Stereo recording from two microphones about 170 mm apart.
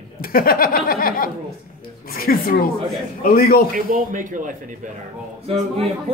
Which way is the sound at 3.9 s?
55° right (ahead or behind).